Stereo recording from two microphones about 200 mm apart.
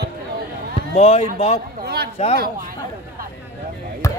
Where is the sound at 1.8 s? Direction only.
50° right (ahead or behind).